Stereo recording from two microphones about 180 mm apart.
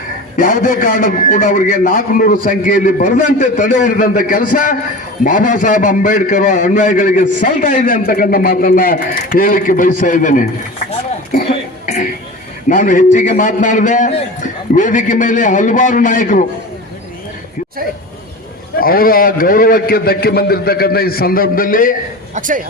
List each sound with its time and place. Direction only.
0.3 s a man's voice: 50° left (ahead or behind)
12.6 s a man's voice: 45° left (ahead or behind)
18.8 s a man's voice: 55° left (ahead or behind)
22.4 s a man's voice: 45° right (ahead or behind)